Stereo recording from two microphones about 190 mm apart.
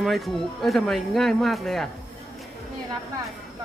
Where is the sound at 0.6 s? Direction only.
Centre (ahead or behind).